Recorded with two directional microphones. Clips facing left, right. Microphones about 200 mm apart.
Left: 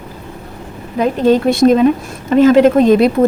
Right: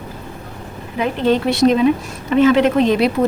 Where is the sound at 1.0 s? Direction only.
40° left (ahead or behind).